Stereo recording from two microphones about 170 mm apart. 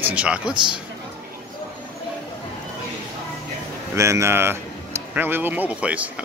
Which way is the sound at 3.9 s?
15° right (ahead or behind).